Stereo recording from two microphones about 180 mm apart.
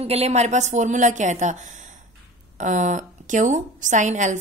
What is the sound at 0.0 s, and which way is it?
A woman's voice, 35° right (ahead or behind).